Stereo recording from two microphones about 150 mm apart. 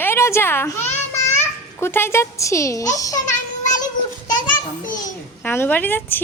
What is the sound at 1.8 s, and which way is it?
A child's voice, 15° left (ahead or behind).